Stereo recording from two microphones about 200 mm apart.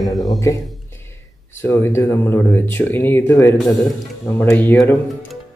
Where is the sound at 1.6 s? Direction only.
10° left (ahead or behind).